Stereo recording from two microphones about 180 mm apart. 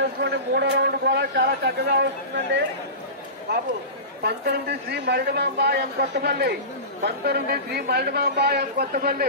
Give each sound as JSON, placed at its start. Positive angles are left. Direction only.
{"t": 0.0, "sound": "a man's voice", "side_deg": -70}
{"t": 4.2, "sound": "a man's voice", "side_deg": -65}